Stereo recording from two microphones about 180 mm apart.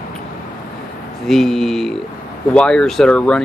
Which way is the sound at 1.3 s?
Centre (ahead or behind).